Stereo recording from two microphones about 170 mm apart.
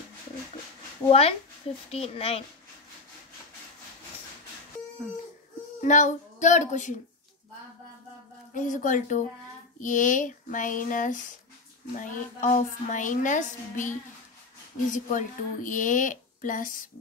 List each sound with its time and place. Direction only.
1.0 s speech: 35° left (ahead or behind)
5.8 s speech: 45° left (ahead or behind)
8.5 s speech: 50° left (ahead or behind)